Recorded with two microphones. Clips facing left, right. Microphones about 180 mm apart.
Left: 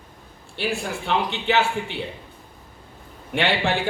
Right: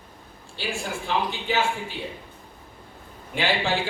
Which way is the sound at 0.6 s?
65° left (ahead or behind).